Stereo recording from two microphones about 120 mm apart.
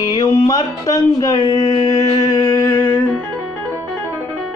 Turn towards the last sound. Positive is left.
turn(degrees=25)  # may be behind; listen again after turning